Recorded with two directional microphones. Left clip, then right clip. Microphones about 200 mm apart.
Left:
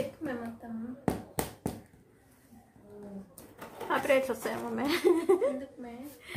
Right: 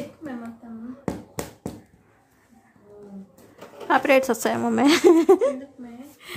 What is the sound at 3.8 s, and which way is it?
A woman's voice, 55° right (ahead or behind).